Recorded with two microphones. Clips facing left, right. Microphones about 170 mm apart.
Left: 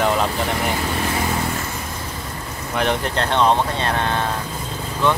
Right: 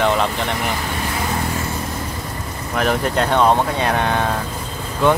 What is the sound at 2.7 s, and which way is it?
Speech, centre (ahead or behind).